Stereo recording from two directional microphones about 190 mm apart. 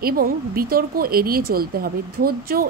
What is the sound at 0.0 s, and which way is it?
A woman's voice, 50° right (ahead or behind).